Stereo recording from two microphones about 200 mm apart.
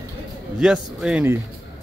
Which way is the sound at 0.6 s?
5° right (ahead or behind).